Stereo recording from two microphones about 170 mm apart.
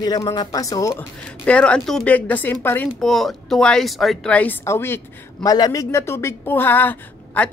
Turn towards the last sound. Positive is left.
turn(degrees=10)  # may be behind; listen again after turning